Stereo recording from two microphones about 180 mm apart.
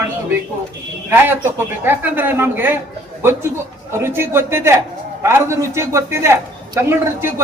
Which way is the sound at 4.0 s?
15° right (ahead or behind).